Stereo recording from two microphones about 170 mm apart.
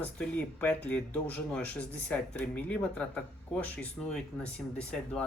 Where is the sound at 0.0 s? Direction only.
5° left (ahead or behind).